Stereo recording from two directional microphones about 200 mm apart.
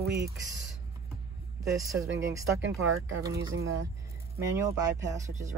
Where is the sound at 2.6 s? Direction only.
80° right.